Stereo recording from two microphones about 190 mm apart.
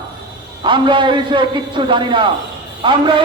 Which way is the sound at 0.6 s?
25° right (ahead or behind).